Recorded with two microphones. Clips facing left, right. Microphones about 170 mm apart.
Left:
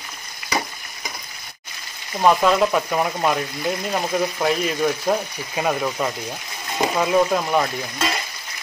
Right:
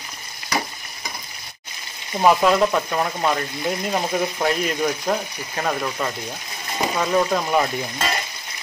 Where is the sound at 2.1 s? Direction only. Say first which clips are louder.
Even; 5° right (ahead or behind).